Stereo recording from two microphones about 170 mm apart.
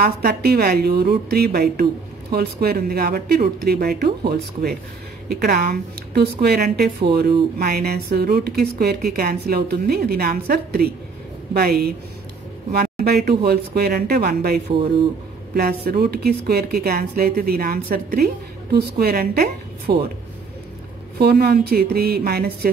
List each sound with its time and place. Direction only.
0.0 s a woman's voice: 65° right (ahead or behind)
21.2 s a woman's voice: 70° right (ahead or behind)